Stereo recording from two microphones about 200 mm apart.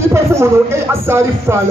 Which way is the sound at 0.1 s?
15° right (ahead or behind).